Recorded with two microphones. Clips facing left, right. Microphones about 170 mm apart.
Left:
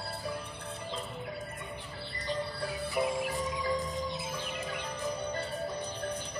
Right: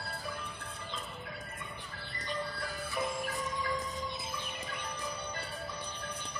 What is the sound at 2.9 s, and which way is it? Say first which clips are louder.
Music: left 5 dB; 15° left (ahead or behind).